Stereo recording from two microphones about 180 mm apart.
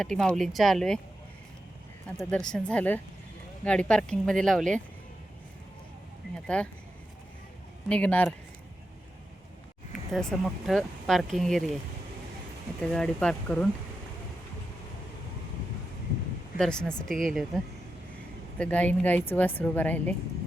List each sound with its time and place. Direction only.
0.0 s speech: 5° left (ahead or behind)
2.1 s speech: 5° left (ahead or behind)
6.5 s speech: 5° left (ahead or behind)
7.9 s speech: 5° left (ahead or behind)
10.1 s speech: centre (ahead or behind)
12.8 s speech: 5° left (ahead or behind)
16.6 s speech: 5° left (ahead or behind)